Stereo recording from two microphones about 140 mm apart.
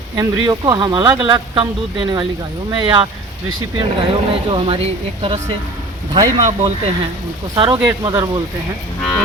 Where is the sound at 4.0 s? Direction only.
40° right (ahead or behind).